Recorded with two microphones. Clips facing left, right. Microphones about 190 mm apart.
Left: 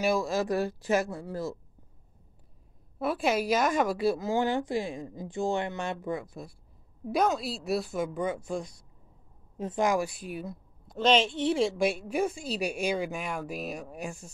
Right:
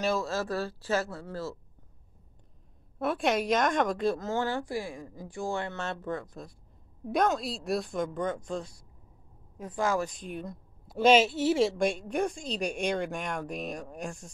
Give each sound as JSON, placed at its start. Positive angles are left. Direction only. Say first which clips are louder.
{"t": 0.0, "sound": "a woman's voice", "louder": "left 3 dB", "side_deg": 15}
{"t": 3.0, "sound": "a woman's voice", "louder": "even", "side_deg": 5}
{"t": 9.6, "sound": "a woman's voice", "louder": "left 2 dB", "side_deg": 20}
{"t": 11.0, "sound": "a woman's voice", "louder": "right 3 dB", "side_deg": -5}